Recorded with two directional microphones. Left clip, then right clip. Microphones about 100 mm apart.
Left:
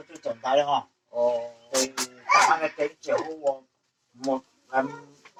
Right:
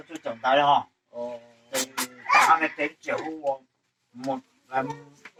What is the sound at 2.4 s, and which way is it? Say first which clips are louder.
Speech: right 2 dB; 30° right (ahead or behind).